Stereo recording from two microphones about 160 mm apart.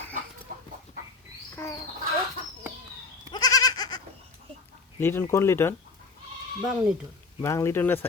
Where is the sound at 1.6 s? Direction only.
15° left (ahead or behind).